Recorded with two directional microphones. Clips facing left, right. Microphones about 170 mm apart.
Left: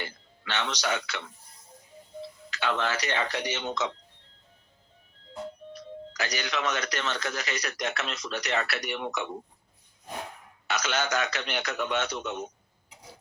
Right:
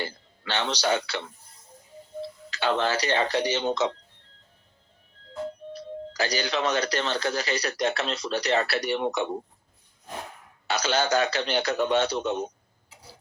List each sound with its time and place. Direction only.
0.0 s speech: 30° right (ahead or behind)
2.5 s speech: 30° right (ahead or behind)
5.7 s speech: 30° right (ahead or behind)
10.7 s speech: 30° right (ahead or behind)